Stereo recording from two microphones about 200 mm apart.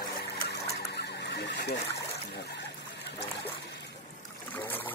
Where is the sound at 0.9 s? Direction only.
55° left (ahead or behind).